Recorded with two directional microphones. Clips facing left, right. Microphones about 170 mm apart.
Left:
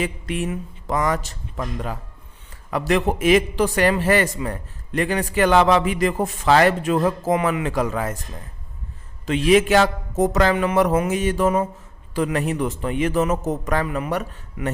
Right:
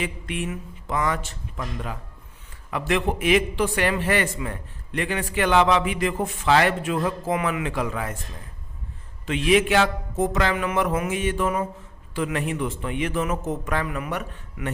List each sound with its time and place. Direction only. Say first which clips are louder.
0.0 s a man's voice: left 4 dB; 40° left (ahead or behind)
9.2 s a man's voice: left 4 dB; 40° left (ahead or behind)